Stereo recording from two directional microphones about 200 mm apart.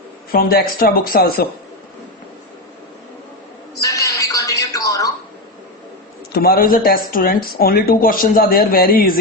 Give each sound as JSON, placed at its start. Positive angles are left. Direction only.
{"t": 0.3, "sound": "speech", "side_deg": 50}
{"t": 3.8, "sound": "television", "side_deg": 15}
{"t": 6.3, "sound": "speech", "side_deg": 45}